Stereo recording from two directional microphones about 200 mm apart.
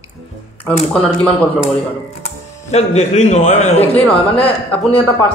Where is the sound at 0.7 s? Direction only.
5° left (ahead or behind).